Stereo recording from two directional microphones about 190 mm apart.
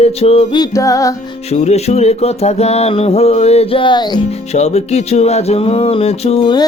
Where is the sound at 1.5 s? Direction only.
35° left (ahead or behind).